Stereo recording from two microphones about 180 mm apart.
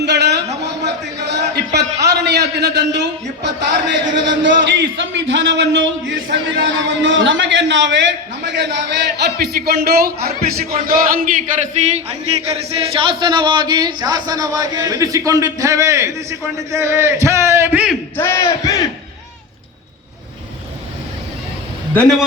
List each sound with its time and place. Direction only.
0.0 s a sound: 70° right (ahead or behind)
2.0 s a man's voice: 70° right (ahead or behind); by 11.4 s 50° right (ahead or behind)
11.9 s speech: 35° right (ahead or behind); by 17.9 s 10° right (ahead or behind)
18.2 s speech: 15° left (ahead or behind)